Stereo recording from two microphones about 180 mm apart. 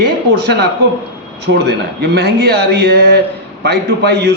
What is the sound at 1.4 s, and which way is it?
A man's voice, 65° right (ahead or behind).